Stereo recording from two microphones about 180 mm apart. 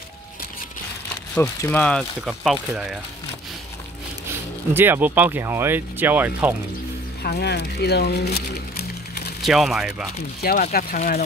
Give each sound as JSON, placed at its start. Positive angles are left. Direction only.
{"t": 1.6, "sound": "speech", "side_deg": 10}
{"t": 4.7, "sound": "speech", "side_deg": -10}
{"t": 7.2, "sound": "speech", "side_deg": 65}
{"t": 9.4, "sound": "speech", "side_deg": 0}
{"t": 10.4, "sound": "speech", "side_deg": 55}